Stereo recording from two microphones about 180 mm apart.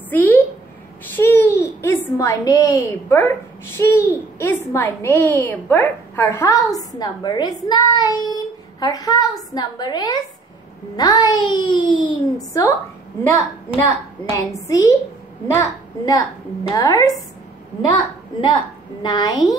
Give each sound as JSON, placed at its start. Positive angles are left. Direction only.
{"t": 0.1, "sound": "a sound", "side_deg": 10}
{"t": 1.1, "sound": "a child's voice", "side_deg": 10}
{"t": 14.3, "sound": "a woman's voice", "side_deg": 20}